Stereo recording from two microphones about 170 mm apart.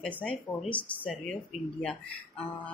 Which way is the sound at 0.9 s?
10° right (ahead or behind).